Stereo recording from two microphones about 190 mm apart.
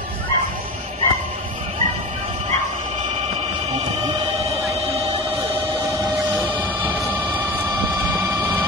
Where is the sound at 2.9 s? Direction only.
35° right (ahead or behind).